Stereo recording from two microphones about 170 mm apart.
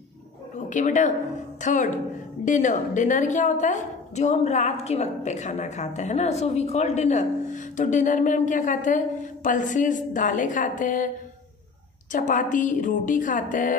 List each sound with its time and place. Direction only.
0.7 s a woman's voice: 45° left (ahead or behind)
12.1 s a woman's voice: 50° left (ahead or behind)